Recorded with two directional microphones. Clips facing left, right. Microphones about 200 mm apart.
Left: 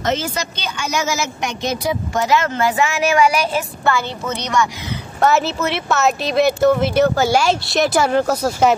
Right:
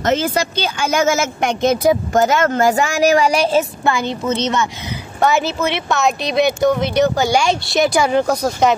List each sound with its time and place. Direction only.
0.0 s speech: 50° right (ahead or behind); by 3.6 s 30° right (ahead or behind)
3.8 s a woman's voice: 15° right (ahead or behind)
5.2 s speech: centre (ahead or behind)